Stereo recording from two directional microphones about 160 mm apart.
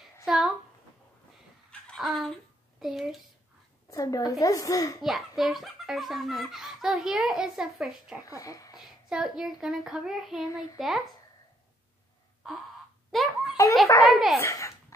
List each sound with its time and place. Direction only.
0.2 s a sound: centre (ahead or behind)
1.7 s a sound: 5° left (ahead or behind)
2.8 s speech: centre (ahead or behind)
3.9 s a woman's voice: 20° left (ahead or behind)
5.0 s speech: centre (ahead or behind)
8.3 s a woman's voice: 20° left (ahead or behind)
8.7 s speech: centre (ahead or behind)
13.1 s baby laughter: centre (ahead or behind)
14.0 s speech: centre (ahead or behind)
14.4 s a woman's voice: 20° left (ahead or behind)